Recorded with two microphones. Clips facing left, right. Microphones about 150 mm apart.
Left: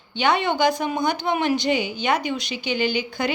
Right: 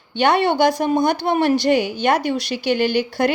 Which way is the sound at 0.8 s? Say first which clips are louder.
Right 5 dB; 40° right (ahead or behind).